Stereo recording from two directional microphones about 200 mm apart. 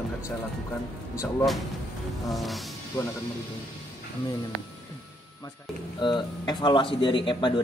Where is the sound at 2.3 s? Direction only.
Centre (ahead or behind).